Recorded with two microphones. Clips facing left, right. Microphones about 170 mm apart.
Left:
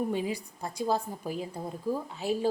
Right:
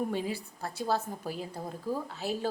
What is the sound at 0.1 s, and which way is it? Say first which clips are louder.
A woman's voice: left 2 dB; 15° left (ahead or behind).